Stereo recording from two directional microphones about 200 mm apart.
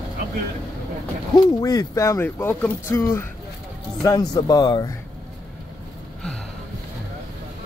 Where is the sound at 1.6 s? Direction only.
20° left (ahead or behind).